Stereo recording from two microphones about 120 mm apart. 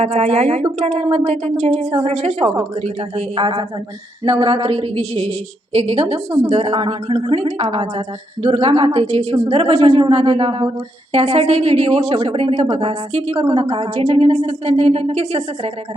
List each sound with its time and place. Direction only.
0.0 s a woman's voice: 70° right (ahead or behind)